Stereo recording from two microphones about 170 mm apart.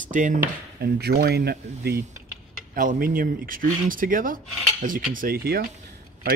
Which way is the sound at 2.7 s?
55° right (ahead or behind).